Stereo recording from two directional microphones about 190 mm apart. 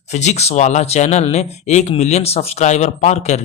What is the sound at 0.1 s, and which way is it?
Speech, 35° left (ahead or behind).